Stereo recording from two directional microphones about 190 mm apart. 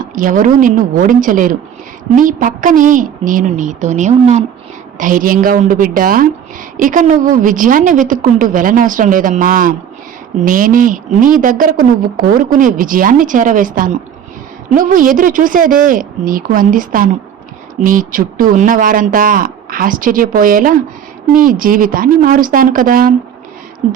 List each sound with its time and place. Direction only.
0.0 s a woman's voice: 45° right (ahead or behind)